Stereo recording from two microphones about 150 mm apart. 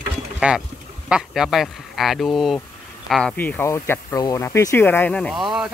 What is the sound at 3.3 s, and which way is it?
Speech, 10° left (ahead or behind).